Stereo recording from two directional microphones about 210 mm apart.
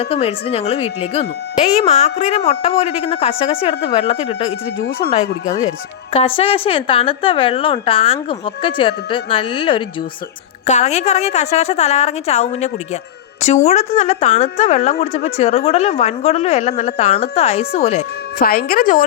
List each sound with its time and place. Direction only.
0.0 s speech: 30° left (ahead or behind)
6.1 s a woman's voice: 25° left (ahead or behind)
18.3 s speech: 45° left (ahead or behind)